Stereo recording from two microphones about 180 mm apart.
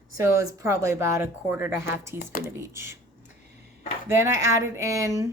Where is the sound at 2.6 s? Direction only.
15° right (ahead or behind).